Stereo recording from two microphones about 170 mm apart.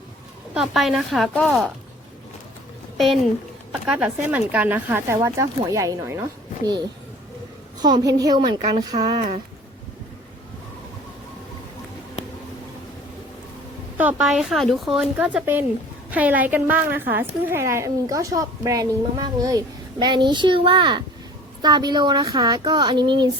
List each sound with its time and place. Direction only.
0.5 s speech: centre (ahead or behind)
3.7 s speech: 5° right (ahead or behind)
7.8 s a woman's voice: 25° right (ahead or behind)
14.0 s a woman's voice: 5° right (ahead or behind); by 23.3 s 25° right (ahead or behind)